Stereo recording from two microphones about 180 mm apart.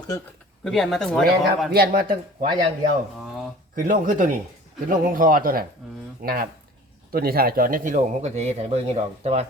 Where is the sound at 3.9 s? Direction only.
50° right (ahead or behind).